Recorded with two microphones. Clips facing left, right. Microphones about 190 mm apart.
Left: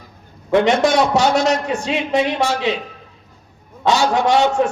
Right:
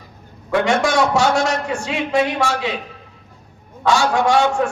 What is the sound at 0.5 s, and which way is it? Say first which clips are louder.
A man's voice: left 3 dB; 20° left (ahead or behind).